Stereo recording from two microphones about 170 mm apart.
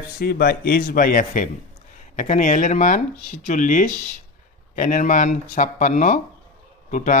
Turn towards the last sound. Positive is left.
turn(degrees=50)  # may be behind; listen again after turning